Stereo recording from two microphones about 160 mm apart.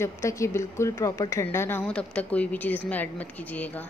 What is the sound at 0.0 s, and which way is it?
A woman's voice, 20° left (ahead or behind).